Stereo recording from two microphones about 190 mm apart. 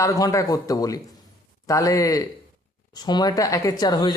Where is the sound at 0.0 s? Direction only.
15° left (ahead or behind).